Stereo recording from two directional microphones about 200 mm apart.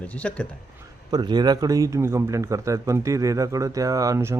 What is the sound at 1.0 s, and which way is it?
A man's voice, 20° right (ahead or behind).